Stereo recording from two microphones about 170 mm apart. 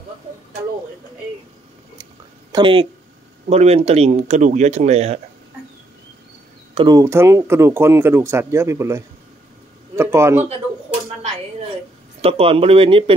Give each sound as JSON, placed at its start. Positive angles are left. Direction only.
{"t": 2.5, "sound": "speech", "side_deg": -30}
{"t": 6.7, "sound": "speech", "side_deg": -25}
{"t": 12.2, "sound": "speech", "side_deg": -35}